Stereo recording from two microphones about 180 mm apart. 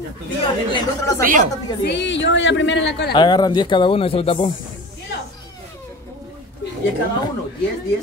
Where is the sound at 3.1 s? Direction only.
25° left (ahead or behind).